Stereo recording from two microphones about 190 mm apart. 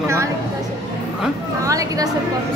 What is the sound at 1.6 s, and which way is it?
Speech, 15° right (ahead or behind).